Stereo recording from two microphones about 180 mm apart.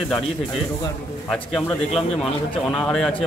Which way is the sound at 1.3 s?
5° left (ahead or behind).